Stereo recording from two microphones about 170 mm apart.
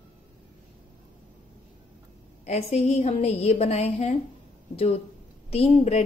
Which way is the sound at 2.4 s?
40° left (ahead or behind).